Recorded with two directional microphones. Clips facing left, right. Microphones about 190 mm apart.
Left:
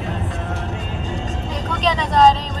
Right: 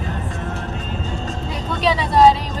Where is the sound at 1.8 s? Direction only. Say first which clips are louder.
Right 1 dB; 10° right (ahead or behind).